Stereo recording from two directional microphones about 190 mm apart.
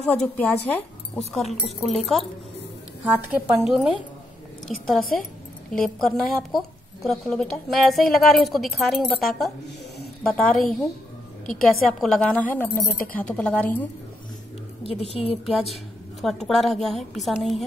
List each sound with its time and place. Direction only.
0.0 s a woman's voice: 10° left (ahead or behind)
3.0 s a woman's voice: 10° right (ahead or behind)
12.0 s a woman's voice: 5° left (ahead or behind)
14.9 s a woman's voice: 30° left (ahead or behind)
15.4 s a woman's voice: centre (ahead or behind)